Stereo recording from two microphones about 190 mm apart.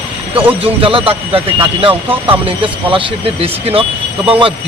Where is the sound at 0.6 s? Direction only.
30° right (ahead or behind).